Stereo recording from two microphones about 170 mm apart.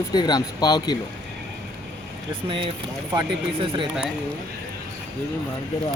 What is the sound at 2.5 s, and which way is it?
Speech, 30° right (ahead or behind).